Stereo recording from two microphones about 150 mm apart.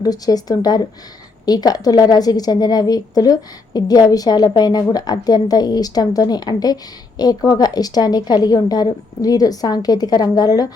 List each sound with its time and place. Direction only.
0.0 s a woman's voice: 25° left (ahead or behind)